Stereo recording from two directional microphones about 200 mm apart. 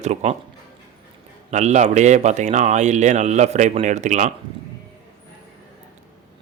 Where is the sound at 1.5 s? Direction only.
35° right (ahead or behind).